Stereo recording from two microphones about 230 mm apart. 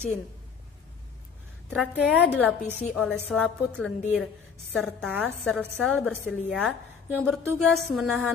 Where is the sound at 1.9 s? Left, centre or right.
Centre.